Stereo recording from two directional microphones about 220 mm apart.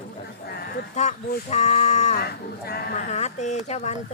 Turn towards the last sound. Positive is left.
turn(degrees=30)  # may be behind; listen again after turning